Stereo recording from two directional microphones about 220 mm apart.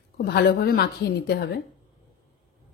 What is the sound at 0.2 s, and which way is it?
Speech, 45° left (ahead or behind).